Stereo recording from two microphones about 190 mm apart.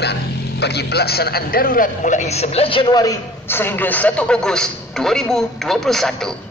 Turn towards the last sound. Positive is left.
turn(degrees=0)  # may be behind; listen again after turning